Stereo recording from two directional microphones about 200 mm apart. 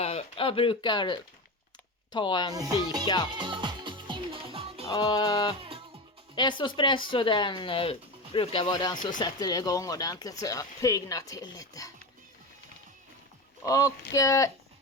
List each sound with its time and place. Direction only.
0.0 s speech: 30° left (ahead or behind)
2.5 s music: 20° right (ahead or behind)
4.9 s speech: 20° left (ahead or behind)
5.5 s music: 25° right (ahead or behind)
6.3 s speech: 25° left (ahead or behind)
13.6 s speech: 15° left (ahead or behind)